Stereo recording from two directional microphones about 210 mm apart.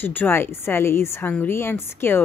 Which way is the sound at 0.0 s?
10° left (ahead or behind).